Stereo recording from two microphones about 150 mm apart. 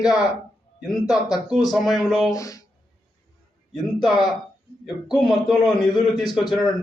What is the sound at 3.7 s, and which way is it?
A man's voice, centre (ahead or behind).